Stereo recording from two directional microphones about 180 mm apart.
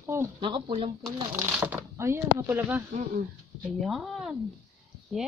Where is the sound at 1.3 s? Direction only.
10° right (ahead or behind).